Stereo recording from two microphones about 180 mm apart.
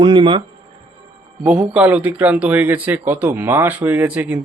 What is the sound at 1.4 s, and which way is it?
Speech, 5° right (ahead or behind).